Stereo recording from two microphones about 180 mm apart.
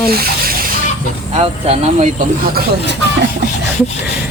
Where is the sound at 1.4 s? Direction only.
35° right (ahead or behind).